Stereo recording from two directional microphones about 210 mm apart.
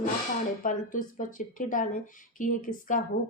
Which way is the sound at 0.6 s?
40° left (ahead or behind).